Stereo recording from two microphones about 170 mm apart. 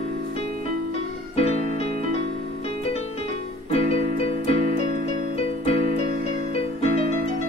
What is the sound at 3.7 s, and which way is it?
Music, 35° left (ahead or behind).